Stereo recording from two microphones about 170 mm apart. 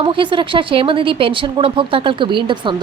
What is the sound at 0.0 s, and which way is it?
A woman's voice, 30° right (ahead or behind).